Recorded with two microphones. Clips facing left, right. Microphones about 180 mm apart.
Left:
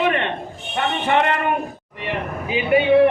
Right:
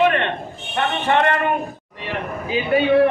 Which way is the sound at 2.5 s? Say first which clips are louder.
Left 1 dB; 15° left (ahead or behind).